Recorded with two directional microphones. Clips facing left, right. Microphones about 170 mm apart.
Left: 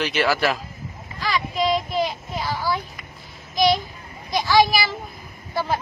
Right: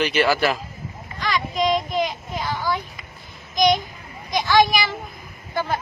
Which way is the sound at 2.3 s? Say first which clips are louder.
Even; 10° left (ahead or behind).